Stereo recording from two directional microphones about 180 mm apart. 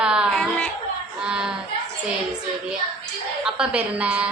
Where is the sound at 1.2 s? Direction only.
5° right (ahead or behind).